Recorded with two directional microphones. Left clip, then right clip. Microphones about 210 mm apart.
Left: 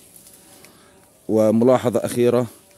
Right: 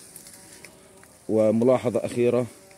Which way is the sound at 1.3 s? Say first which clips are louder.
Left 4 dB; 40° left (ahead or behind).